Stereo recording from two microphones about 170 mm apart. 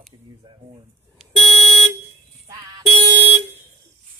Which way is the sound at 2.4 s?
25° right (ahead or behind).